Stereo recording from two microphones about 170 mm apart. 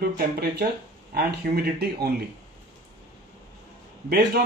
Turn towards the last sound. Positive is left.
turn(degrees=-65)  # may be behind; listen again after turning